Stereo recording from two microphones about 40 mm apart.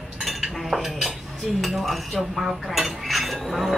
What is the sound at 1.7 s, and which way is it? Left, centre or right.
Cutlery, centre.